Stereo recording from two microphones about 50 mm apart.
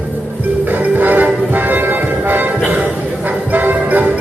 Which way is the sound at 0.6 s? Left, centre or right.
Right.